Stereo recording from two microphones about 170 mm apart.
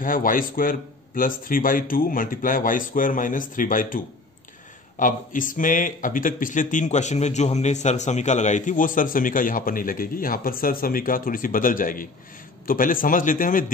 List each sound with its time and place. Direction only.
0.0 s speech: 55° left (ahead or behind)